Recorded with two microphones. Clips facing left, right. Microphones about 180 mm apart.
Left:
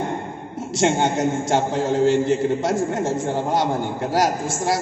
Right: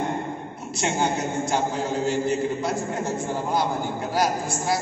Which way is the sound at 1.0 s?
85° left.